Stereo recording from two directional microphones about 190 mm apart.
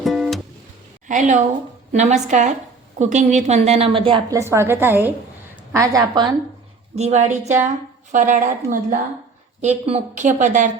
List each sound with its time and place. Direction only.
0.0 s music: centre (ahead or behind)
1.0 s a woman's voice: 40° right (ahead or behind)
4.4 s a woman's voice: 15° right (ahead or behind)
6.9 s a woman's voice: 35° right (ahead or behind)